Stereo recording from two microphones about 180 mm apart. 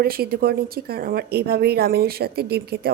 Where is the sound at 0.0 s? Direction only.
60° right (ahead or behind).